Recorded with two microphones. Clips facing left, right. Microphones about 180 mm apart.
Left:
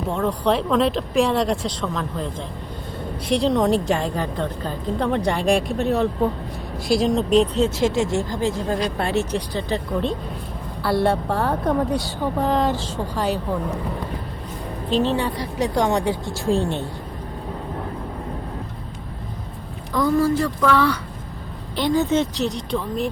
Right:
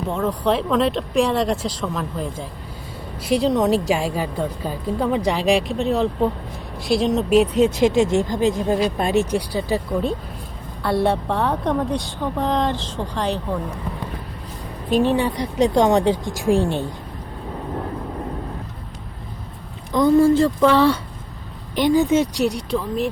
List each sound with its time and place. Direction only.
0.1 s a woman's voice: centre (ahead or behind)
14.8 s speech: 15° right (ahead or behind)
19.9 s a woman's voice: 20° right (ahead or behind)
21.8 s speech: 15° right (ahead or behind)